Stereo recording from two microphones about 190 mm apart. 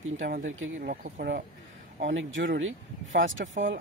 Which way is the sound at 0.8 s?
50° right (ahead or behind).